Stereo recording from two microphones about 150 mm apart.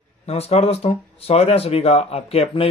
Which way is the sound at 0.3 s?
45° left (ahead or behind).